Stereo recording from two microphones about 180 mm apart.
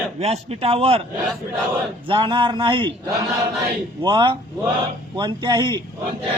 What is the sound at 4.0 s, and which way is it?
Speech, 25° right (ahead or behind).